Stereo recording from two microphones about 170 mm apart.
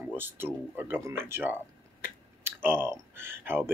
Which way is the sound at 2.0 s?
55° left (ahead or behind).